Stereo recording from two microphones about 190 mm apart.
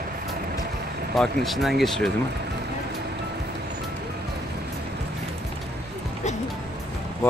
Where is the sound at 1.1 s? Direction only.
Centre (ahead or behind).